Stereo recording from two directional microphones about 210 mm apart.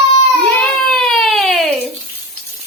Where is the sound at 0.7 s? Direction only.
Centre (ahead or behind).